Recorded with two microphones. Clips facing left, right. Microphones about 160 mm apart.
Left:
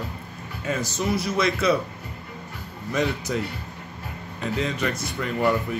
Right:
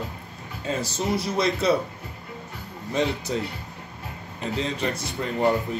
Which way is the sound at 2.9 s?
30° right (ahead or behind).